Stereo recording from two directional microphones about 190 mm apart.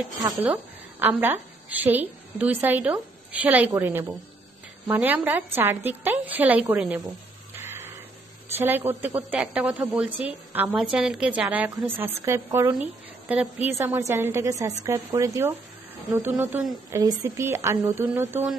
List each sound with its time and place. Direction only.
0.2 s a woman's voice: 10° right (ahead or behind)
7.6 s a sound: 10° right (ahead or behind)
8.5 s a woman's voice: 10° right (ahead or behind)